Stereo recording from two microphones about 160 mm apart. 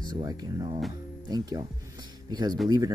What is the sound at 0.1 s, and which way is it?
A man's voice, 25° right (ahead or behind).